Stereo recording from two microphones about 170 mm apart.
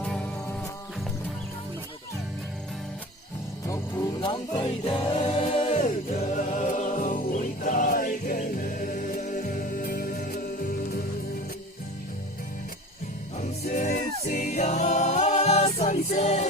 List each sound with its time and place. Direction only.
0.0 s music: 5° left (ahead or behind)
4.2 s music: 30° left (ahead or behind)
5.0 s a capella: 30° left (ahead or behind)
5.8 s music: 45° left (ahead or behind)
13.4 s music: 45° left (ahead or behind)